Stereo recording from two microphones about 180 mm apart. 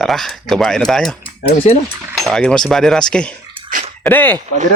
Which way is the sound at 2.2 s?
5° left (ahead or behind).